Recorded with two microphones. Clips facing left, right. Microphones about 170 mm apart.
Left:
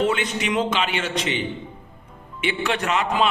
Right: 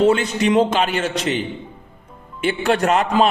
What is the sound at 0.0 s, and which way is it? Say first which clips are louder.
A man's voice: right 7 dB; 35° right (ahead or behind).